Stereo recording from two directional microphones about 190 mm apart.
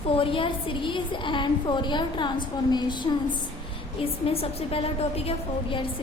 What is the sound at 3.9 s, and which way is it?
A woman's voice, 30° left (ahead or behind).